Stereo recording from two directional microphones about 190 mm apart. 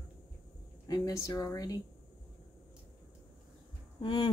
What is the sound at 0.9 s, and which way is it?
Speech, 20° left (ahead or behind).